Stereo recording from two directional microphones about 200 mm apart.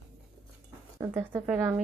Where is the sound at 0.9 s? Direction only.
15° right (ahead or behind).